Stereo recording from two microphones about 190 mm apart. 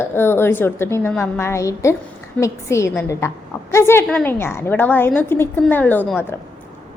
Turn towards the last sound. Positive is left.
turn(degrees=10)  # may be behind; listen again after turning